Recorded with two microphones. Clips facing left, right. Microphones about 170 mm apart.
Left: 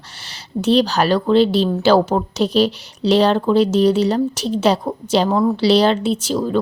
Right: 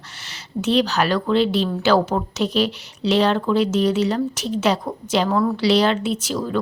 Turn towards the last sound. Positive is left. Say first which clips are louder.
# left 4 dB
turn(degrees=30)  # may be behind; listen again after turning